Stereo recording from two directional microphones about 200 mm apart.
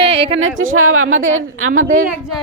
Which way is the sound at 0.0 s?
30° right (ahead or behind).